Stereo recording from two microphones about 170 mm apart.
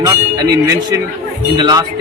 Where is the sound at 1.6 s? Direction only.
25° right (ahead or behind).